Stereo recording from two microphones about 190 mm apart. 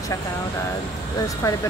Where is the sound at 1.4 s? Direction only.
15° left (ahead or behind).